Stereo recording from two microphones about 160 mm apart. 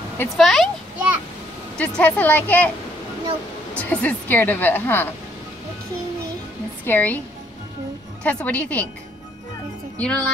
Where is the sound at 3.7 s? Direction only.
10° left (ahead or behind).